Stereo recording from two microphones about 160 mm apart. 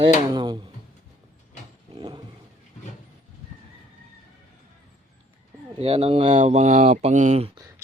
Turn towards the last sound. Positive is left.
turn(degrees=-45)  # may be behind; listen again after turning